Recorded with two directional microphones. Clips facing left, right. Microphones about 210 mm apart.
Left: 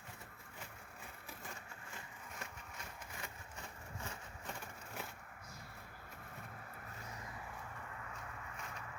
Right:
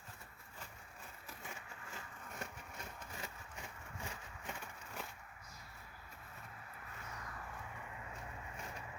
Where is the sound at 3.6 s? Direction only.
15° right (ahead or behind).